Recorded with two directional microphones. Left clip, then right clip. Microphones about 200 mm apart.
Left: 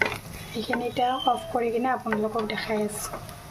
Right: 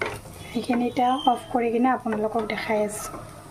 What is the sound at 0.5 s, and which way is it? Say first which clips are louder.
Speech: right 2 dB; 5° right (ahead or behind).